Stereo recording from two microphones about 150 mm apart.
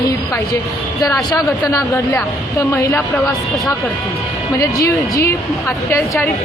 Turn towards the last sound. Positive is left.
turn(degrees=20)  # may be behind; listen again after turning